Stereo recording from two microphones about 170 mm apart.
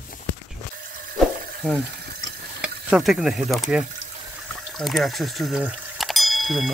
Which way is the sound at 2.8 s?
Centre (ahead or behind).